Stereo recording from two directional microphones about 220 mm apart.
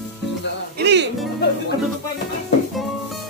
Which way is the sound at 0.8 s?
50° right (ahead or behind).